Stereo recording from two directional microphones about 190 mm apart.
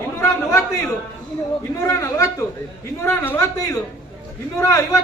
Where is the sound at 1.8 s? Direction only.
15° left (ahead or behind).